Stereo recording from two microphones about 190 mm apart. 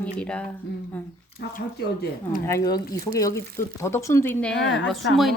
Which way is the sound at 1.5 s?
50° left (ahead or behind).